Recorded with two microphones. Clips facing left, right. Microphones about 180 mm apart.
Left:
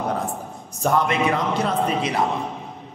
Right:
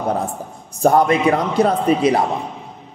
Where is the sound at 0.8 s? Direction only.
40° right (ahead or behind).